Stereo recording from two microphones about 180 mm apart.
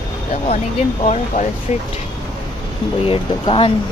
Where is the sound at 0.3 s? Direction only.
40° left (ahead or behind).